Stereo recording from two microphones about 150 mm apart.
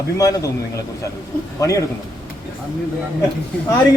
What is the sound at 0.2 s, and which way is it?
Speech, 20° left (ahead or behind).